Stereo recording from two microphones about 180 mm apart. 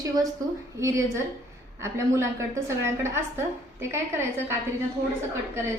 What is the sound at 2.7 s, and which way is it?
A woman's voice, 15° right (ahead or behind).